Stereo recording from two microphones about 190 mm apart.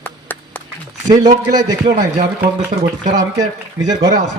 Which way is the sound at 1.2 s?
20° right (ahead or behind).